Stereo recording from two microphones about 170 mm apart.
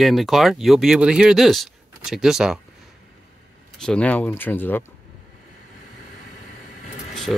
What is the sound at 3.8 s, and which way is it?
Speech, 5° left (ahead or behind).